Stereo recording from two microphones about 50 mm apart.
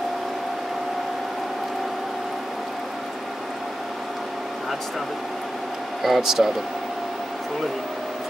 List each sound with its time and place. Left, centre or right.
6.0 s speech: centre